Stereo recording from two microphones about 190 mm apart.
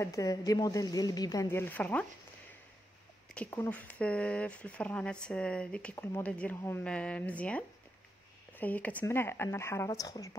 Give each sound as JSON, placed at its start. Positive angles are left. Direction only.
{"t": 0.0, "sound": "speech", "side_deg": 15}
{"t": 3.3, "sound": "speech", "side_deg": 10}